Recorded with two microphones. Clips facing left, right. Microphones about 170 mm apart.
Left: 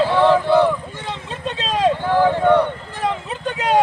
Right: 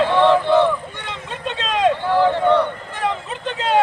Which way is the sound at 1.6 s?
35° left (ahead or behind).